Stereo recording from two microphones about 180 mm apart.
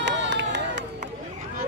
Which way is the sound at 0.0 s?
75° right (ahead or behind).